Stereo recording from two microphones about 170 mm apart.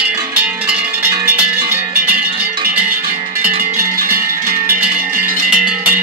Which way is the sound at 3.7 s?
60° right (ahead or behind).